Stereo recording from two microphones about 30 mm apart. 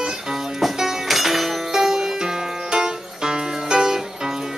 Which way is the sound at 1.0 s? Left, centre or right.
Centre.